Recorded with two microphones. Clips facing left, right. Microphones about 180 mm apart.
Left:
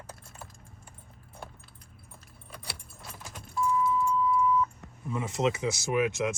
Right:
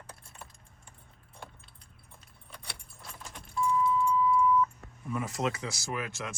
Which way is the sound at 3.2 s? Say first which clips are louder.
Left 1 dB; 5° left (ahead or behind).